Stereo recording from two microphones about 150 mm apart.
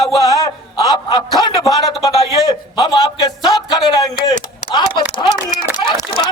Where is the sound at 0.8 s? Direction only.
30° left (ahead or behind).